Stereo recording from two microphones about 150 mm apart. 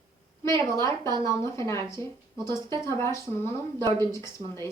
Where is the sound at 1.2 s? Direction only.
20° left (ahead or behind).